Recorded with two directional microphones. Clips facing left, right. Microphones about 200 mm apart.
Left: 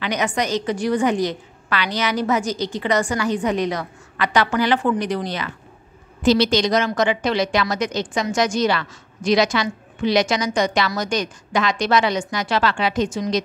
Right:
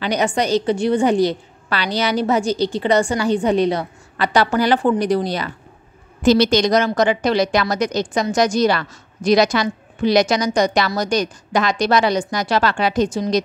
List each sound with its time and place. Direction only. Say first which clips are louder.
0.0 s a woman's voice: right 3 dB; 30° right (ahead or behind)
6.2 s a woman's voice: right 3 dB; 45° right (ahead or behind)